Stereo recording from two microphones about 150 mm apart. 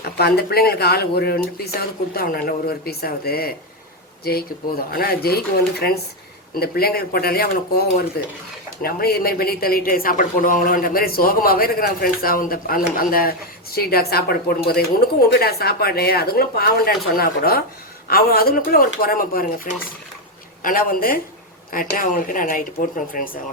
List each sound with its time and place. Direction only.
0.0 s a woman's voice: 90° left; by 23.3 s 70° left (ahead or behind)